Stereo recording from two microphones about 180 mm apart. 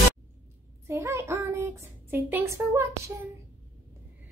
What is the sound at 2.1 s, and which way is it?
Speech, 15° right (ahead or behind).